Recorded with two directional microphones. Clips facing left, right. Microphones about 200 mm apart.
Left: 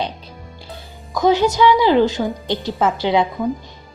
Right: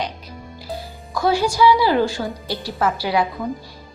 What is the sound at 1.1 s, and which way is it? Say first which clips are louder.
A woman's voice: left 4 dB; 20° left (ahead or behind).